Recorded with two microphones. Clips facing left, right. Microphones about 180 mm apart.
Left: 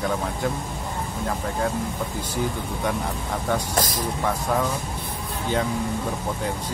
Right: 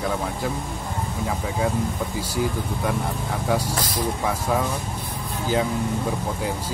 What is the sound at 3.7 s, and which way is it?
Speech, 45° left (ahead or behind).